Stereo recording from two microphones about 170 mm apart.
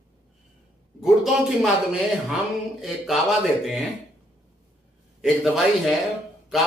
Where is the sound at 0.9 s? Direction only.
Centre (ahead or behind).